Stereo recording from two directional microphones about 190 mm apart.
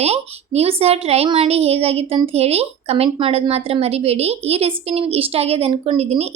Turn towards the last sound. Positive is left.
turn(degrees=-35)  # may be behind; listen again after turning